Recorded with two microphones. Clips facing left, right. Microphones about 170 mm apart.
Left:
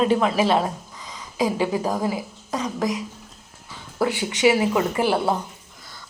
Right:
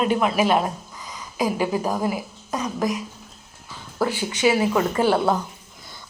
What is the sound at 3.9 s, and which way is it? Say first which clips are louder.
Speech: left 1 dB; 20° left (ahead or behind).